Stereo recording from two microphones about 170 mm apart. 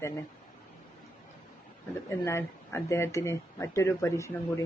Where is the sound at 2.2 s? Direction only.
15° left (ahead or behind).